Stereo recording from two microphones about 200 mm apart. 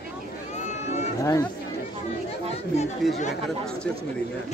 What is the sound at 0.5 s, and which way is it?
Run, 35° left (ahead or behind).